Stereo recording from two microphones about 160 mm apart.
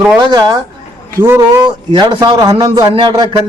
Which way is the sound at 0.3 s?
25° right (ahead or behind).